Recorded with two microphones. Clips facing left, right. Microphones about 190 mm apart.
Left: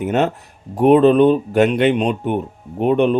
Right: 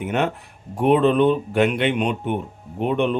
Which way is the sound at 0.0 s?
40° left (ahead or behind).